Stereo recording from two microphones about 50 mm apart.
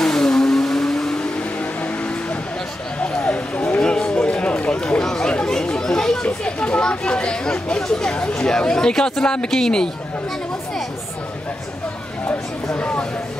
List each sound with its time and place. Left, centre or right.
0.0 s vehicle: centre
1.6 s a sound: left
3.8 s run: centre
5.3 s chatter: centre
6.2 s speech: left
12.7 s speech: left